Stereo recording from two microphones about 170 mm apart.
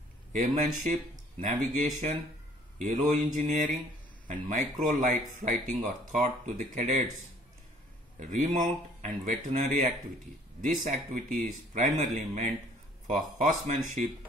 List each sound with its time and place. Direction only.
0.3 s speech: 50° right (ahead or behind)
8.2 s speech: 45° right (ahead or behind)